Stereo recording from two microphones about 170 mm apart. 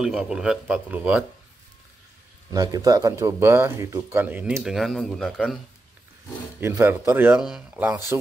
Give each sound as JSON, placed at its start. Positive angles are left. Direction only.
{"t": 0.0, "sound": "speech", "side_deg": -5}
{"t": 2.5, "sound": "speech", "side_deg": -20}
{"t": 6.6, "sound": "speech", "side_deg": -15}